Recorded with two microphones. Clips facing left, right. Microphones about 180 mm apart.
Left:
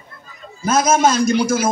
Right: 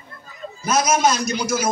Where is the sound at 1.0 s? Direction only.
50° left (ahead or behind).